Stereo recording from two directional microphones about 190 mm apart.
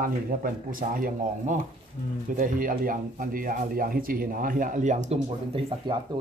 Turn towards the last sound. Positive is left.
turn(degrees=-45)  # may be behind; listen again after turning